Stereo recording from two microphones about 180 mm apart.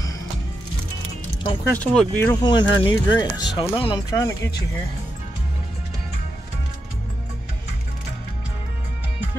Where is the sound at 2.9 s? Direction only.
20° left (ahead or behind).